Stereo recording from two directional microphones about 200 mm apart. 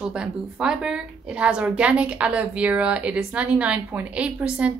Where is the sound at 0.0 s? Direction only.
5° right (ahead or behind).